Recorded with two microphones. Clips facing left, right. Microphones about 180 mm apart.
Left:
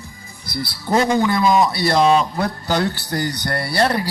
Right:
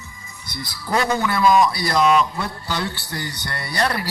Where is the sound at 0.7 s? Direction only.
25° left (ahead or behind).